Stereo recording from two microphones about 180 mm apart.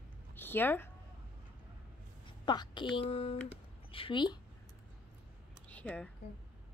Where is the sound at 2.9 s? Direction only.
35° left (ahead or behind).